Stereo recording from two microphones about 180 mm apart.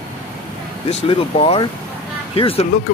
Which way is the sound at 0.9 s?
30° left (ahead or behind).